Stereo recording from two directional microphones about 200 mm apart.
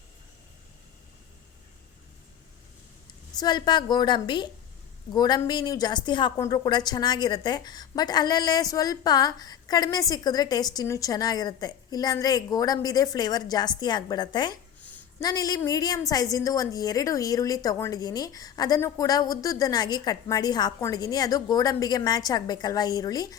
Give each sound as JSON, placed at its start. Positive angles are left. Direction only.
{"t": 3.4, "sound": "a woman's voice", "side_deg": 20}
{"t": 14.8, "sound": "a sound", "side_deg": 5}
{"t": 15.2, "sound": "a woman's voice", "side_deg": 20}